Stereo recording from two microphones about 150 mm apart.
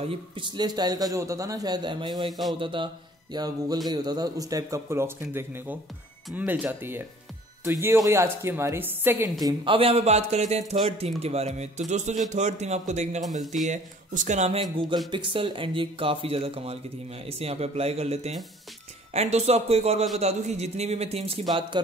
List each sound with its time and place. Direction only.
0.1 s a man's voice: 30° right (ahead or behind); by 9.3 s 15° right (ahead or behind)
9.4 s a man's voice: 25° right (ahead or behind)
9.8 s a man's voice: 45° right (ahead or behind)
15.0 s a man's voice: 35° right (ahead or behind)
21.5 s speech: 30° right (ahead or behind)